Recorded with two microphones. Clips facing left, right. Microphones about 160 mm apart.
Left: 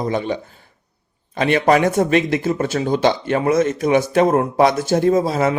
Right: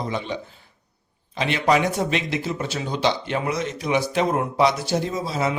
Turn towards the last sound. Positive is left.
turn(degrees=50)  # may be behind; listen again after turning